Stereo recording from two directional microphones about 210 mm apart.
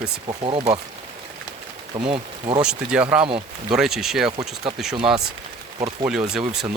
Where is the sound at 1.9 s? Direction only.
25° right (ahead or behind).